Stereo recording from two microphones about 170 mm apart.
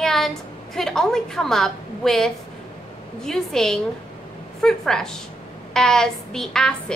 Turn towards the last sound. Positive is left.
turn(degrees=5)  # may be behind; listen again after turning